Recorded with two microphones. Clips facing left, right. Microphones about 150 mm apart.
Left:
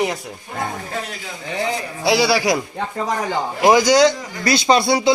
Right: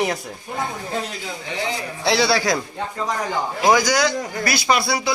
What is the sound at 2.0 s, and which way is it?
A man's voice, 10° left (ahead or behind).